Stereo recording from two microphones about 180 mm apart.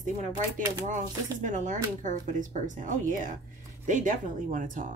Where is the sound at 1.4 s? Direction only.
45° right (ahead or behind).